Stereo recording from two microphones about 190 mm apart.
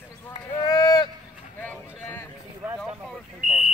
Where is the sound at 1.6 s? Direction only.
10° left (ahead or behind).